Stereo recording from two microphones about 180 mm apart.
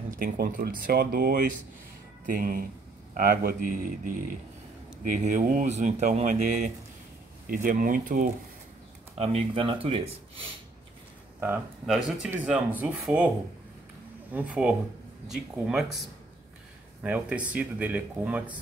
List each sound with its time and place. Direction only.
0.2 s speech: 50° right (ahead or behind)
9.2 s speech: 30° right (ahead or behind)
11.3 s speech: 10° right (ahead or behind)
11.8 s speech: centre (ahead or behind)
14.3 s speech: 5° right (ahead or behind)
17.0 s speech: 5° right (ahead or behind)